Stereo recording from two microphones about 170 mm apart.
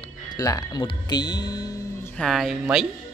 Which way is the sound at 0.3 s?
20° left (ahead or behind).